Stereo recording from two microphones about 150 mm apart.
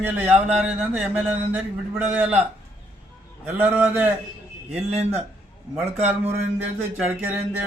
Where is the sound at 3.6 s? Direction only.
10° right (ahead or behind).